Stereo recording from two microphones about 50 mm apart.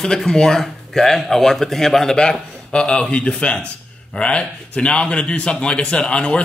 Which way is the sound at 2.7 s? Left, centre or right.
Centre.